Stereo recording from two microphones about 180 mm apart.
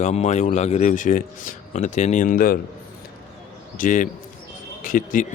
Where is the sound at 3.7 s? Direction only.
50° left (ahead or behind).